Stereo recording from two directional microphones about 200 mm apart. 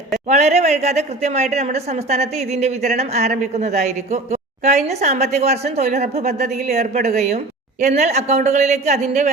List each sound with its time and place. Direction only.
0.3 s a woman's voice: 35° right (ahead or behind)